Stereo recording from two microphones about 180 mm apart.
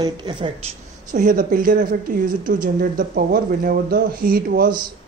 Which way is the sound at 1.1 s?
45° right (ahead or behind).